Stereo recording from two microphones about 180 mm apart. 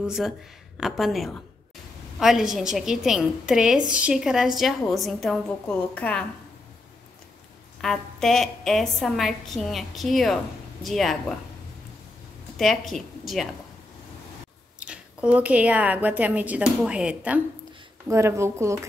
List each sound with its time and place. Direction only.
0.0 s a woman's voice: centre (ahead or behind)
7.8 s a woman's voice: centre (ahead or behind)
12.5 s a woman's voice: centre (ahead or behind)
14.8 s a woman's voice: 5° right (ahead or behind)